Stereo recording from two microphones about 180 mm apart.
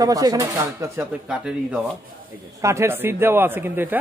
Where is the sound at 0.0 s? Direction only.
20° right (ahead or behind).